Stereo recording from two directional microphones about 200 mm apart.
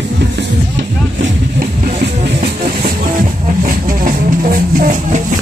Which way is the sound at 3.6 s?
45° right (ahead or behind).